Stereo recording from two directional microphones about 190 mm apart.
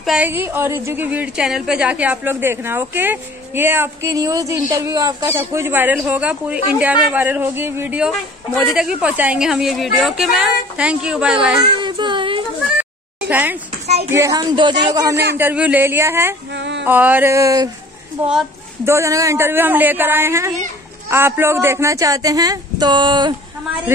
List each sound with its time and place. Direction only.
0.0 s a woman's voice: 5° right (ahead or behind)
11.8 s child singing: 25° right (ahead or behind)
13.3 s a woman's voice: 10° right (ahead or behind)
16.5 s music: 65° right (ahead or behind)
16.8 s a woman's voice: 10° right (ahead or behind)
18.2 s a woman's voice: 5° right (ahead or behind)
18.9 s a woman's voice: 15° right (ahead or behind)